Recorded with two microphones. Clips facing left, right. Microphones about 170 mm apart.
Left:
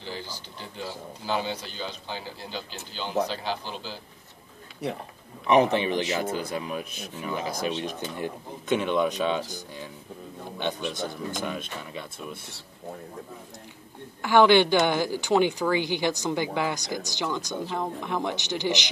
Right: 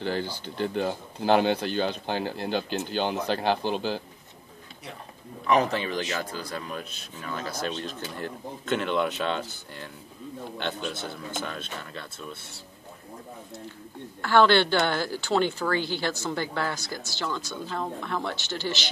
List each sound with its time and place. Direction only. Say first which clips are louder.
0.0 s speech: right 8 dB; 60° right (ahead or behind)
5.5 s a woman's voice: left 3 dB; 20° left (ahead or behind)
11.0 s a woman's voice: left 3 dB; 15° left (ahead or behind)
14.2 s a woman's voice: left 2 dB; 15° left (ahead or behind)